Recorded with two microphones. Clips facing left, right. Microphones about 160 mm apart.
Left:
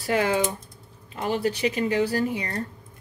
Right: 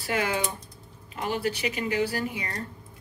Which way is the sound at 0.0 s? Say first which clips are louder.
Left 5 dB; 35° left (ahead or behind).